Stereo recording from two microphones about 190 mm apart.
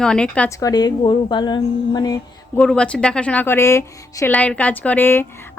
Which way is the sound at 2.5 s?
5° left (ahead or behind).